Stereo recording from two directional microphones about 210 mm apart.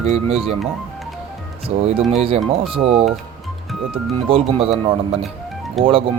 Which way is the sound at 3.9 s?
25° right (ahead or behind).